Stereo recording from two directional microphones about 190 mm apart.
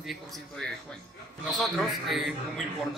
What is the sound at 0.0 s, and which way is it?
A man's voice, centre (ahead or behind).